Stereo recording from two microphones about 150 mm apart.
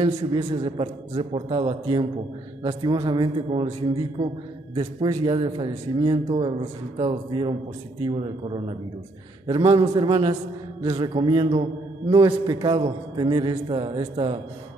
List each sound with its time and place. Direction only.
0.0 s a man's voice: 30° right (ahead or behind)